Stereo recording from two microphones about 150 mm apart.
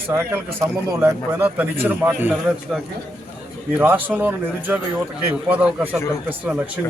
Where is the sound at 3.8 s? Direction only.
10° right (ahead or behind).